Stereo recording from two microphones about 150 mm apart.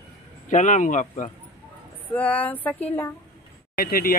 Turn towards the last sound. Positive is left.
turn(degrees=85)